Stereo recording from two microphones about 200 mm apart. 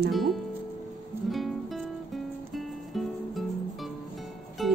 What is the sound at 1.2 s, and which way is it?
Music, centre (ahead or behind).